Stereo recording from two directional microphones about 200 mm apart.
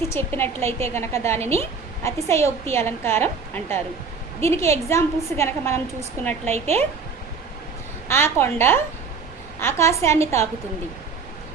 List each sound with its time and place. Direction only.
0.1 s a woman's voice: 10° left (ahead or behind)
6.4 s speech: 35° right (ahead or behind)
8.0 s a woman's voice: 10° left (ahead or behind)